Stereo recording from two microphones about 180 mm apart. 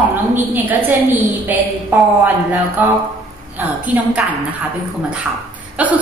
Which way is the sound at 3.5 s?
10° right (ahead or behind).